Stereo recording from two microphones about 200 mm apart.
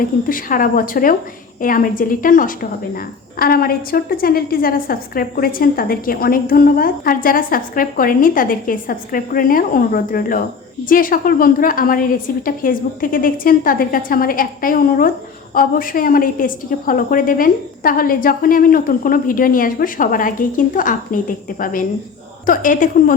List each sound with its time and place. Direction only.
0.3 s a woman's voice: 45° left (ahead or behind)